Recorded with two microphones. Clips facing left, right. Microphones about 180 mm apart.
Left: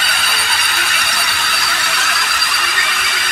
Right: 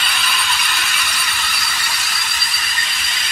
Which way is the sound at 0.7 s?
70° left (ahead or behind).